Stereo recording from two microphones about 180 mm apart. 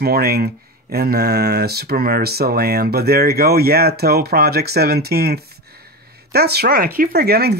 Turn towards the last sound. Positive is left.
turn(degrees=-60)  # may be behind; listen again after turning